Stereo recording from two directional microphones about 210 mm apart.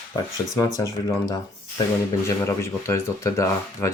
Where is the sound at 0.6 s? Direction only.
15° left (ahead or behind).